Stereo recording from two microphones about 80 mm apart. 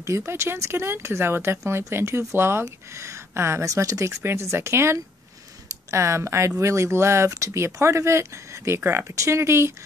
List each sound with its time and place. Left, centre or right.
0.0 s speech: right